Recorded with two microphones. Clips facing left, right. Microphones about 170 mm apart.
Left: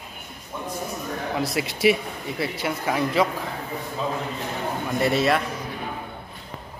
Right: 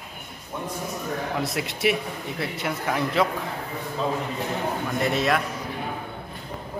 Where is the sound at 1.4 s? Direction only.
Centre (ahead or behind).